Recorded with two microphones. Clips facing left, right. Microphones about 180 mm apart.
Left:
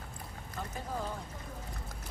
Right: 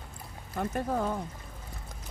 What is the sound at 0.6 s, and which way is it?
Speech, 60° right (ahead or behind).